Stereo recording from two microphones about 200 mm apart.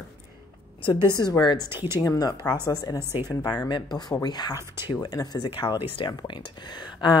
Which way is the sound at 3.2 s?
20° left (ahead or behind).